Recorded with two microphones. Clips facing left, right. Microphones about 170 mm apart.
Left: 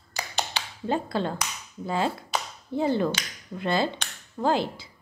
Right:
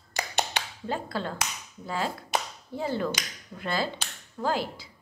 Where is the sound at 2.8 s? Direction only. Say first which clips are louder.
Left 5 dB; 20° left (ahead or behind).